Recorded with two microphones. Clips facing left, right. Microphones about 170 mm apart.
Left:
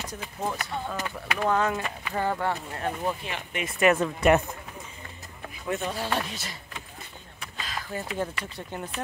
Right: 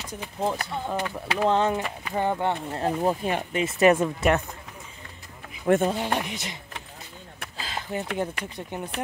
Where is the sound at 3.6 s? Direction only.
30° right (ahead or behind).